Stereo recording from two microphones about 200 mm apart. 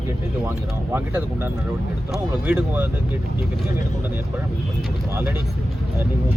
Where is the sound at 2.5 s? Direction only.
10° right (ahead or behind).